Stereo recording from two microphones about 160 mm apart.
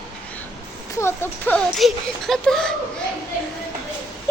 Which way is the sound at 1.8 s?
Centre (ahead or behind).